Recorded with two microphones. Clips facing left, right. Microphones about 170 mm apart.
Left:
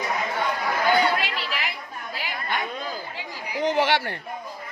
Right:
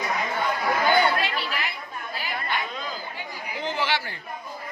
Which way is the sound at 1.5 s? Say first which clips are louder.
Even; 90° left.